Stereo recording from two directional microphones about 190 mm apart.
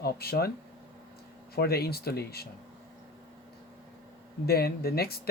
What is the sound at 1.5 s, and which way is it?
Speech, 55° left (ahead or behind).